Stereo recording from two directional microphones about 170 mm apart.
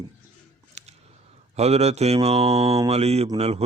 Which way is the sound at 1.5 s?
40° right (ahead or behind).